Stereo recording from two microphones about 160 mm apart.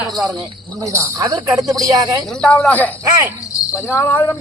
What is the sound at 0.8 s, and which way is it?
Speech, 20° right (ahead or behind).